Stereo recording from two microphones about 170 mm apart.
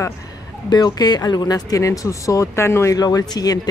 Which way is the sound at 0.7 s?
25° left (ahead or behind).